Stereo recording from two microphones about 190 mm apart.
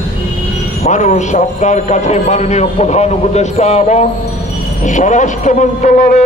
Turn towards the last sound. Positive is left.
turn(degrees=40)  # may be behind; listen again after turning